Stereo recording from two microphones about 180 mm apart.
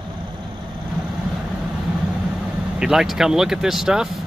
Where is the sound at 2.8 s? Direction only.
Centre (ahead or behind).